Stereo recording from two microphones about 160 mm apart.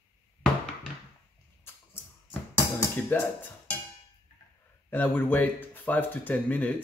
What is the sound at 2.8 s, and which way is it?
Music, 15° left (ahead or behind).